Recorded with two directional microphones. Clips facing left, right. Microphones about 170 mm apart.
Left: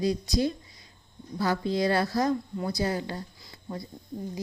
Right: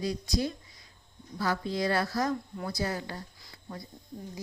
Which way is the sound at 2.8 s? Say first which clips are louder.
Left 3 dB; 30° left (ahead or behind).